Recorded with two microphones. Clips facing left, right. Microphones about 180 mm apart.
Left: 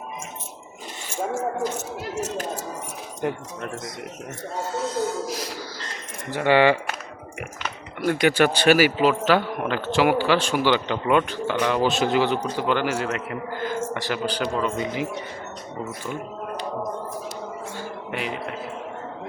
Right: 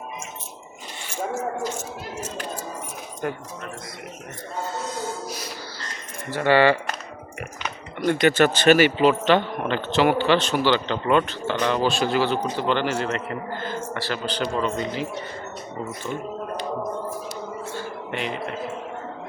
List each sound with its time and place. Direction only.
3.2 s speech: 20° left (ahead or behind)
6.3 s speech: 15° left (ahead or behind)
17.7 s music: 5° left (ahead or behind)